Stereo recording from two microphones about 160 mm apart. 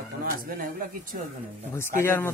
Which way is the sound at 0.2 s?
65° right (ahead or behind).